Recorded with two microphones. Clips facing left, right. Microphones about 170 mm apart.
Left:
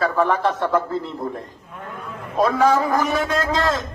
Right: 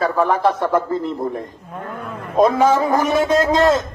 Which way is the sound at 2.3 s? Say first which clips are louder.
Right 3 dB; 20° right (ahead or behind).